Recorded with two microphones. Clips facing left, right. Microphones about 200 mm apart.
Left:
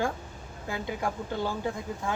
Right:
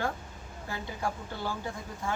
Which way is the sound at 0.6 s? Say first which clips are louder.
Left 4 dB; 15° left (ahead or behind).